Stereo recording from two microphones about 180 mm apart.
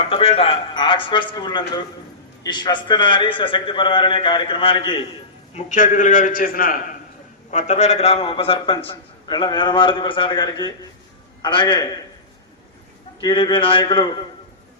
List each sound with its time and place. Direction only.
0.0 s a man's voice: 30° left (ahead or behind)
5.5 s a man's voice: 40° left (ahead or behind)
7.5 s a man's voice: 40° left (ahead or behind); by 11.9 s 25° left (ahead or behind)
13.2 s a man's voice: 25° left (ahead or behind)